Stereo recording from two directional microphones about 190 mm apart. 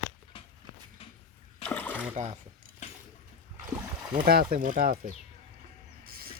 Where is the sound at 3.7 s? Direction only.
15° right (ahead or behind).